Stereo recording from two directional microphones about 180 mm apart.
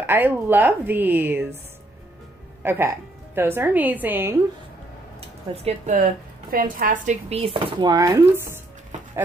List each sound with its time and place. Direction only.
0.0 s a woman's voice: 10° right (ahead or behind)
2.6 s a woman's voice: 15° right (ahead or behind)
5.6 s a woman's voice: 40° right (ahead or behind); by 8.5 s 15° right (ahead or behind)